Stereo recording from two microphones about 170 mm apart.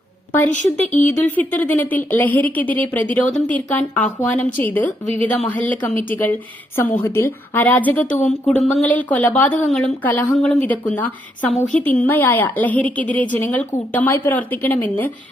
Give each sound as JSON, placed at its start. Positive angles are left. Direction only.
{"t": 0.5, "sound": "a woman's voice", "side_deg": 45}
{"t": 1.0, "sound": "a woman's voice", "side_deg": 10}